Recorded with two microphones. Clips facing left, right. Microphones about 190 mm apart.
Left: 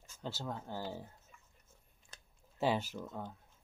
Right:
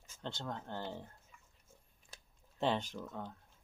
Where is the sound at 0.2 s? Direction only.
5° left (ahead or behind).